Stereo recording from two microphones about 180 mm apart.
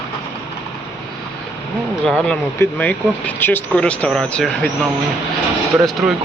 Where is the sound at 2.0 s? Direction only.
5° left (ahead or behind).